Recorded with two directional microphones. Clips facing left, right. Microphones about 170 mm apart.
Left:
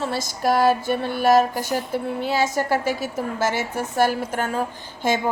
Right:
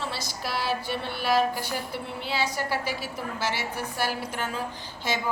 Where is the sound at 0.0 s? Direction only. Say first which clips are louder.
Left 10 dB; 45° left (ahead or behind).